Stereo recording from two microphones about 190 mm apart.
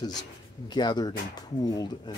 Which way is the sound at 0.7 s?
20° left (ahead or behind).